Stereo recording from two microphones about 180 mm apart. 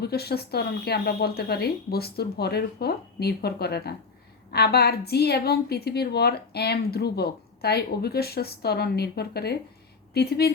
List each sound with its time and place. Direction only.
0.0 s a woman's voice: 60° left (ahead or behind)